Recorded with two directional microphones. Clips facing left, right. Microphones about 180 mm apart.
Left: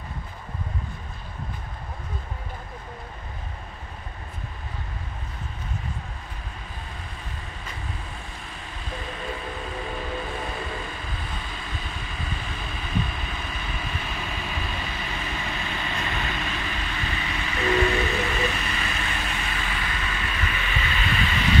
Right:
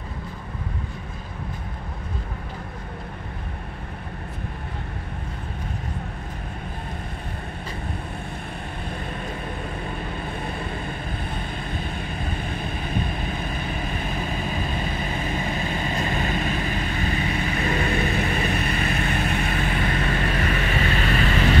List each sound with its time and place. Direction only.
8.8 s vehicle: 60° right (ahead or behind)